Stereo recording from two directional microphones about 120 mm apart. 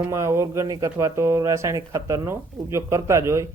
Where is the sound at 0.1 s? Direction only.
25° right (ahead or behind).